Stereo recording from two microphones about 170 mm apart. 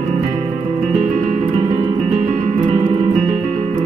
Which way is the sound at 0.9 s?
35° right (ahead or behind).